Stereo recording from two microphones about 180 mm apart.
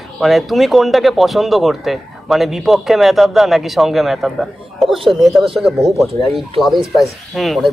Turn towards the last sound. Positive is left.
turn(degrees=0)  # may be behind; listen again after turning